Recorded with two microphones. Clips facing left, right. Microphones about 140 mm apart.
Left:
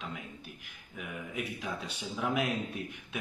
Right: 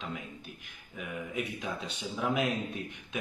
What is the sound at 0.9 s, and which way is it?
A man's voice, 5° left (ahead or behind).